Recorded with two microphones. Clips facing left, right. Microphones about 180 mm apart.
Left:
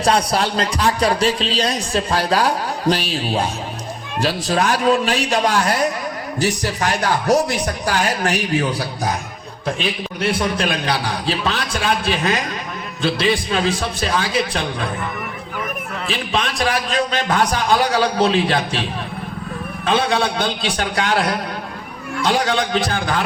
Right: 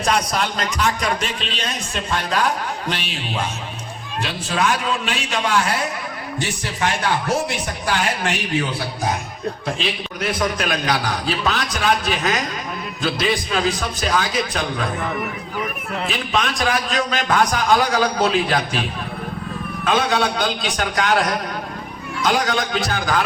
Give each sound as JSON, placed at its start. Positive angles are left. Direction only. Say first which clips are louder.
{"t": 0.0, "sound": "speech", "louder": "left 3 dB", "side_deg": 30}
{"t": 10.2, "sound": "a man's voice", "louder": "left 2 dB", "side_deg": 30}
{"t": 16.0, "sound": "a man's voice", "louder": "left 1 dB", "side_deg": 30}